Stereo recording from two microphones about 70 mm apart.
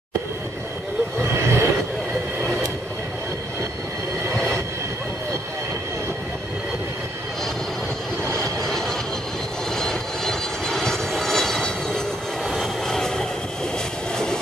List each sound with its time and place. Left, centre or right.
1.3 s vehicle: right
4.3 s vehicle: centre
8.4 s vehicle: centre
12.4 s train: centre
14.1 s vehicle: centre